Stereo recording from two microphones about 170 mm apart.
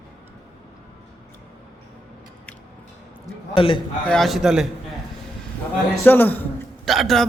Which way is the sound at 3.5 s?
30° left (ahead or behind).